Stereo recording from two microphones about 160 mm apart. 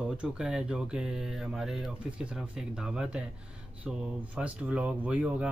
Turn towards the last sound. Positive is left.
turn(degrees=-5)  # may be behind; listen again after turning